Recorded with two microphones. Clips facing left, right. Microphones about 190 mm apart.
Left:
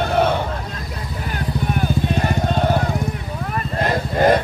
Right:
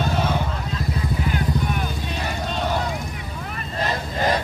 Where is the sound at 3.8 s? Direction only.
55° left (ahead or behind).